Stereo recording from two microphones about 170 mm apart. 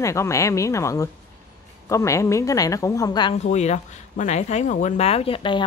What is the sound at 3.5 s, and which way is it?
Speech, 40° left (ahead or behind).